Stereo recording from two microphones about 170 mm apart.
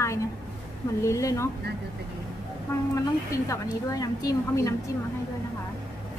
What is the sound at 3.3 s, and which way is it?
A woman's voice, 20° left (ahead or behind).